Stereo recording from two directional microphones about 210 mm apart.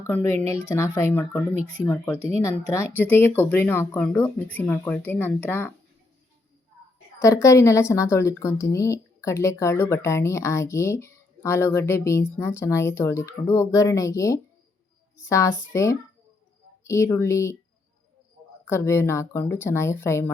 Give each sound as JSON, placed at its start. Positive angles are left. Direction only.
{"t": 0.0, "sound": "a woman's voice", "side_deg": 10}
{"t": 1.5, "sound": "speech", "side_deg": -25}
{"t": 2.4, "sound": "a woman's voice", "side_deg": 15}
{"t": 7.2, "sound": "a woman's voice", "side_deg": 15}
{"t": 18.6, "sound": "a woman's voice", "side_deg": 10}